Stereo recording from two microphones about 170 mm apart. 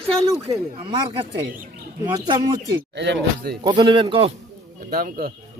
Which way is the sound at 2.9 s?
90° right.